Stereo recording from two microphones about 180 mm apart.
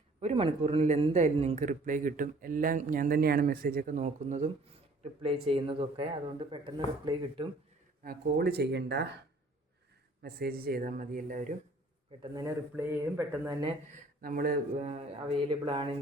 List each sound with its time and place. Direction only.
0.2 s a man's voice: 35° right (ahead or behind)
8.0 s speech: 55° right (ahead or behind)
10.2 s a man's voice: 60° right (ahead or behind)
12.2 s speech: 20° right (ahead or behind)
14.2 s a man's voice: 50° right (ahead or behind)
14.8 s speech: 35° right (ahead or behind)